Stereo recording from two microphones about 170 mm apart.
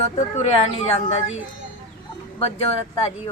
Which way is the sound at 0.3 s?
40° left (ahead or behind).